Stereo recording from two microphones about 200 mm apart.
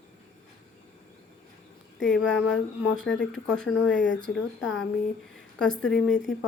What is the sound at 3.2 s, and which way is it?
Speech, 60° left (ahead or behind).